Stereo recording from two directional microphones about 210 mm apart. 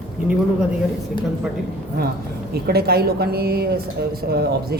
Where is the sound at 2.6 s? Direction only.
50° right (ahead or behind).